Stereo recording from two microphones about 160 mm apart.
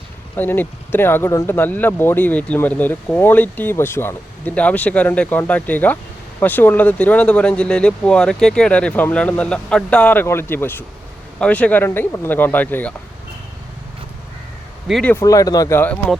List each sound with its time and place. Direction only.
0.3 s speech: 10° left (ahead or behind)
14.8 s speech: centre (ahead or behind)
15.1 s speech: 20° left (ahead or behind)